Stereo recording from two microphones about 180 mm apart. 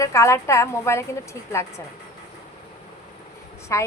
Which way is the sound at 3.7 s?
15° left (ahead or behind).